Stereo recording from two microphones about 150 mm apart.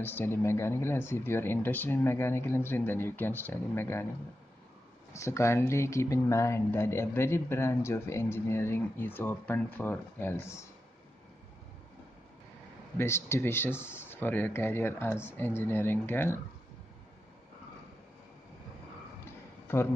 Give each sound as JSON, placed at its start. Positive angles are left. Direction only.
{"t": 0.0, "sound": "speech", "side_deg": 15}
{"t": 5.1, "sound": "speech", "side_deg": 20}
{"t": 12.9, "sound": "speech", "side_deg": 15}
{"t": 19.7, "sound": "speech", "side_deg": 15}